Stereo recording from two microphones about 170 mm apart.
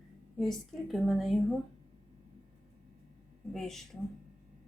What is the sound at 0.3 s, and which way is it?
Speech, centre (ahead or behind).